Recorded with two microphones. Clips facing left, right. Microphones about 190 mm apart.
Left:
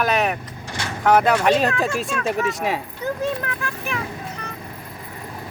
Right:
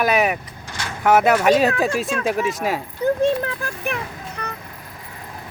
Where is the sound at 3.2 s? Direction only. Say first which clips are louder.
Right 5 dB; 30° right (ahead or behind).